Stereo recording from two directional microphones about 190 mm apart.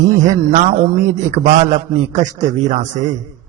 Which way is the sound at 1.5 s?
40° right (ahead or behind).